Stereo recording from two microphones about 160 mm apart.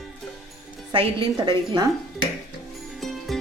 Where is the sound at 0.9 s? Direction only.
30° right (ahead or behind).